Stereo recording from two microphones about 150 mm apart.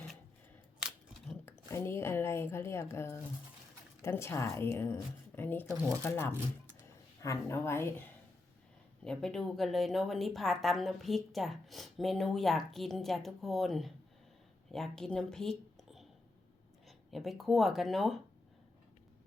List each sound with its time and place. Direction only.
1.5 s a woman's voice: 15° left (ahead or behind)
9.0 s a woman's voice: 5° left (ahead or behind)
17.1 s a woman's voice: centre (ahead or behind)